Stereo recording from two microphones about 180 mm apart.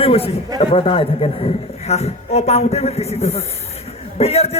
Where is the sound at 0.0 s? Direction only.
35° left (ahead or behind).